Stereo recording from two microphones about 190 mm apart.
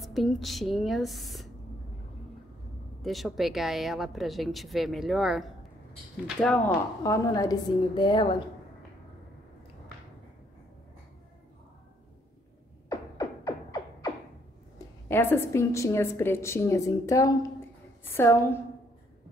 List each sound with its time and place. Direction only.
0.0 s a woman's voice: centre (ahead or behind)
3.0 s a woman's voice: centre (ahead or behind)
7.0 s a woman's voice: 20° left (ahead or behind)
12.9 s beatboxing: 20° left (ahead or behind)
15.0 s a woman's voice: 10° left (ahead or behind)